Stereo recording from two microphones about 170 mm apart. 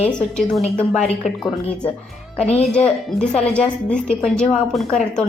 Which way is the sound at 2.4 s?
40° left (ahead or behind).